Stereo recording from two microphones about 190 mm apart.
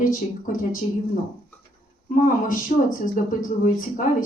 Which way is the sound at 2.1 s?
45° left (ahead or behind).